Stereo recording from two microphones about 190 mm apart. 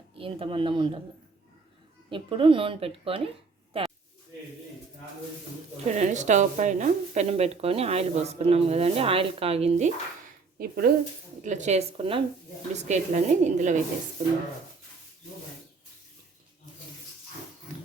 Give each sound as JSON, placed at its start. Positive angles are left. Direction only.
{"t": 0.2, "sound": "a woman's voice", "side_deg": -30}
{"t": 2.0, "sound": "a woman's voice", "side_deg": -25}
{"t": 3.7, "sound": "a sound", "side_deg": -30}
{"t": 5.8, "sound": "speech", "side_deg": -40}
{"t": 10.6, "sound": "speech", "side_deg": -55}
{"t": 11.4, "sound": "speech", "side_deg": -40}